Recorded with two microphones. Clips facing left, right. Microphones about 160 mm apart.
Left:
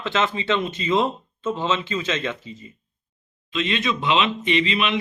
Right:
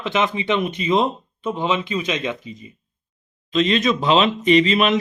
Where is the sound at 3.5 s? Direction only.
40° right (ahead or behind).